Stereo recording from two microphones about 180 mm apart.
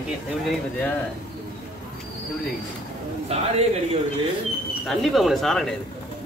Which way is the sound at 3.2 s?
35° right (ahead or behind).